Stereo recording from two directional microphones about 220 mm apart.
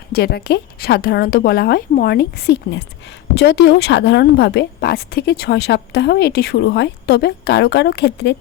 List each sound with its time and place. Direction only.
0.1 s a woman's voice: 45° left (ahead or behind)